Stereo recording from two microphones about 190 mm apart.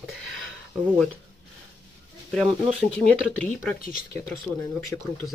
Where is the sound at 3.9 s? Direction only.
50° left (ahead or behind).